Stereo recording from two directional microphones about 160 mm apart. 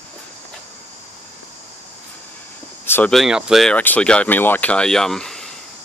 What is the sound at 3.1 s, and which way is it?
Speech, centre (ahead or behind).